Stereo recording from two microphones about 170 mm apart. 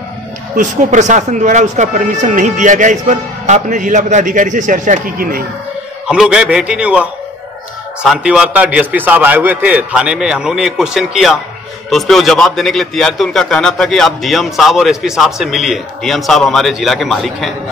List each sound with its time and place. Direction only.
0.6 s speech: 45° right (ahead or behind)
6.0 s a man's voice: 5° right (ahead or behind)